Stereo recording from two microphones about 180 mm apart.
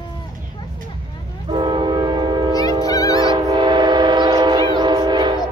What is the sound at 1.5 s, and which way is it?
Train, 25° right (ahead or behind).